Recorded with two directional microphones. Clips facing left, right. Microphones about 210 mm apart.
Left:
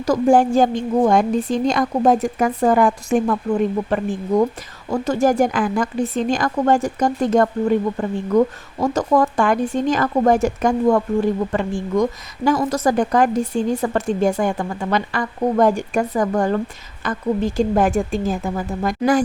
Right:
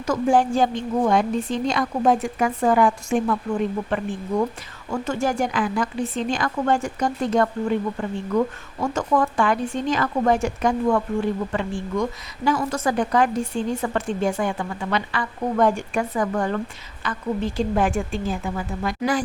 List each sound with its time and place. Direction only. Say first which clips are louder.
0.0 s a woman's voice: left 5 dB; 40° left (ahead or behind)